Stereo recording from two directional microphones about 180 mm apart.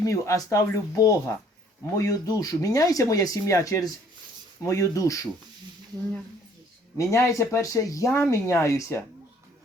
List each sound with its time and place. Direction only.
0.0 s speech: 20° left (ahead or behind)
6.9 s speech: 15° left (ahead or behind)